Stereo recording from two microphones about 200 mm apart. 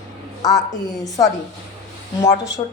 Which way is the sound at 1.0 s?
15° left (ahead or behind).